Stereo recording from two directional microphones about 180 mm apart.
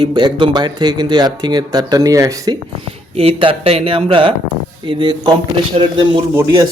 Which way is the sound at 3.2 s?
30° right (ahead or behind).